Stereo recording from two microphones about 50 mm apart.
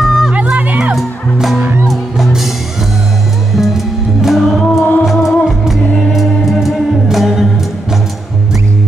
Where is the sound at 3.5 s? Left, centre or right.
Centre.